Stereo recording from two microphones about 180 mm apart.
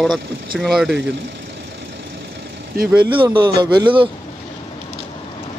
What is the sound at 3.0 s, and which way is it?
A man's voice, 25° right (ahead or behind).